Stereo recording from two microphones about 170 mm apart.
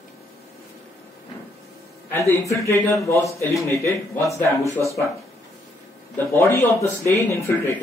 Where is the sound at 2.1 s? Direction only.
15° left (ahead or behind).